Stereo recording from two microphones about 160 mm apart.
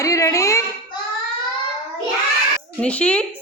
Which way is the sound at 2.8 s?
5° left (ahead or behind).